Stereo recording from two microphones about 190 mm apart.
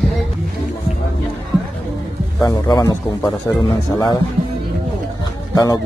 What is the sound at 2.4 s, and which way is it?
Speech, 20° left (ahead or behind).